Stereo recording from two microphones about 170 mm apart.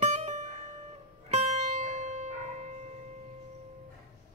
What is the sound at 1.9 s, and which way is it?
Music, 45° right (ahead or behind).